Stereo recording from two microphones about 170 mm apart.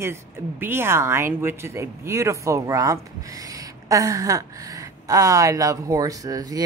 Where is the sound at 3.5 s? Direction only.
20° right (ahead or behind).